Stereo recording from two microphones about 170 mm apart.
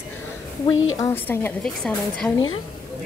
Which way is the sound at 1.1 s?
10° left (ahead or behind).